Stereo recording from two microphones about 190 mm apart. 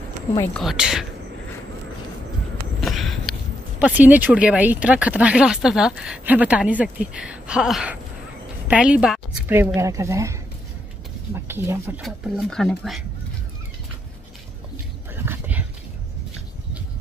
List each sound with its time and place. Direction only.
0.6 s speech: centre (ahead or behind)
2.8 s a sound: centre (ahead or behind)
3.8 s a woman's voice: 10° right (ahead or behind)
9.8 s speech: 15° right (ahead or behind)
11.4 s speech: 15° right (ahead or behind)
12.0 s speech: centre (ahead or behind)
15.2 s a sound: 10° right (ahead or behind)